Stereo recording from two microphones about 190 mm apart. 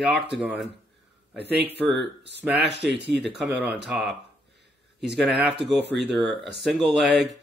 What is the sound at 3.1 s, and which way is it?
Speech, 5° right (ahead or behind).